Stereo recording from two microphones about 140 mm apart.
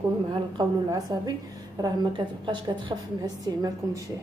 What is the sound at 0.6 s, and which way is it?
A woman's voice, 25° right (ahead or behind).